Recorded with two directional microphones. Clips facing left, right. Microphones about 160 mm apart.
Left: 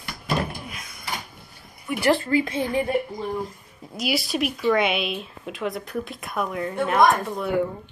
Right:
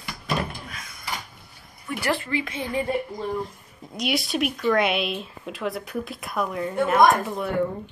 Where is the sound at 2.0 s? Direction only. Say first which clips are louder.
Left 6 dB; 35° left (ahead or behind).